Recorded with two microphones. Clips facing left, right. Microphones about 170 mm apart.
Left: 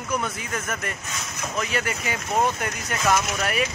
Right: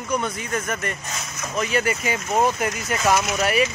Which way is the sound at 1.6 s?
Centre (ahead or behind).